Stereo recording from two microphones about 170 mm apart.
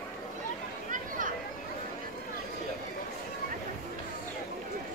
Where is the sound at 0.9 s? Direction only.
50° right (ahead or behind).